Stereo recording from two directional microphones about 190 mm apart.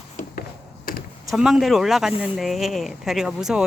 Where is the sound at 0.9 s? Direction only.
45° left (ahead or behind).